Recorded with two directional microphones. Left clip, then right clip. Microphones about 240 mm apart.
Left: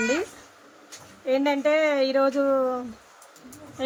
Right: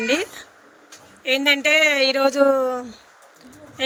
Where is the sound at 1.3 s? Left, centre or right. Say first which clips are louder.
Right 5 dB; right.